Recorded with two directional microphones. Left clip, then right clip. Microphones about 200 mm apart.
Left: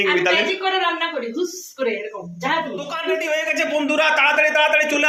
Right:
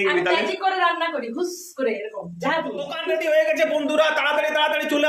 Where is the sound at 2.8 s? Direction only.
10° right (ahead or behind).